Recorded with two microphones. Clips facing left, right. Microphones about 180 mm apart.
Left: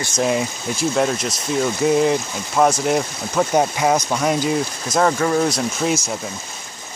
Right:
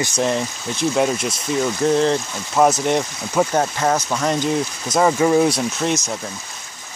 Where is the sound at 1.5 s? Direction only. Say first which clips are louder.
Left 1 dB; 10° left (ahead or behind).